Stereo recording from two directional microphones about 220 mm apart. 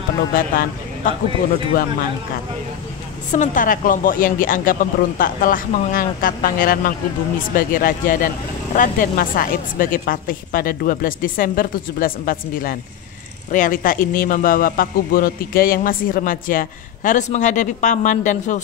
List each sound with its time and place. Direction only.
0.3 s a man's voice: 40° left (ahead or behind)
3.3 s a man's voice: 35° left (ahead or behind)